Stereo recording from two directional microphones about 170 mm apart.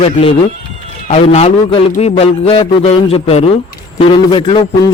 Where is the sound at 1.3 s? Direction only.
35° left (ahead or behind).